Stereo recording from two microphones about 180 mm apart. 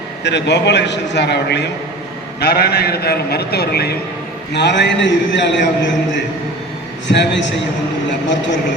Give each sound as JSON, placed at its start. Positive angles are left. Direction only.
{"t": 0.3, "sound": "a man's voice", "side_deg": 75}
{"t": 2.4, "sound": "a man's voice", "side_deg": 60}
{"t": 4.5, "sound": "a man's voice", "side_deg": 75}